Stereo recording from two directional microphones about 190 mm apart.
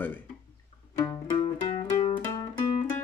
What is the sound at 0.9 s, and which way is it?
Music, 20° left (ahead or behind).